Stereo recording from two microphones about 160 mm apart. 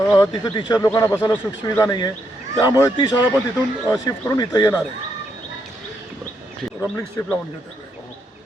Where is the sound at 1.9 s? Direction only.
25° left (ahead or behind).